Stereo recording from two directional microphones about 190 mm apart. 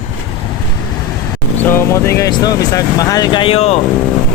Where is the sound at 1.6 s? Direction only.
15° left (ahead or behind); by 3.8 s 35° left (ahead or behind).